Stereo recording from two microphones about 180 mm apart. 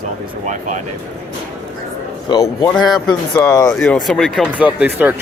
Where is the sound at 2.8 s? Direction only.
Centre (ahead or behind).